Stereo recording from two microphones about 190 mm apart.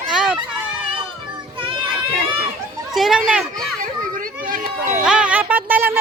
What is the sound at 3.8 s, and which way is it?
Children playing, 45° right (ahead or behind).